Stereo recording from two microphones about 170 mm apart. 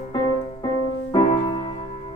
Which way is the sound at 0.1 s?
25° left (ahead or behind).